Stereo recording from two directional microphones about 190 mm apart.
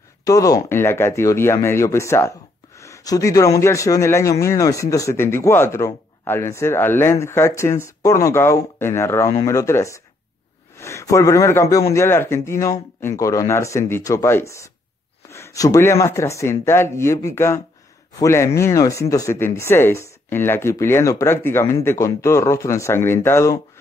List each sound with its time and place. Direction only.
0.2 s speech: 20° left (ahead or behind)